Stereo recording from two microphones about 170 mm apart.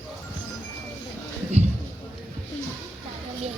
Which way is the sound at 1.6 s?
40° right (ahead or behind).